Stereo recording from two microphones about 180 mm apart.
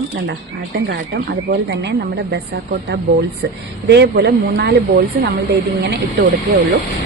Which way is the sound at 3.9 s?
70° right (ahead or behind).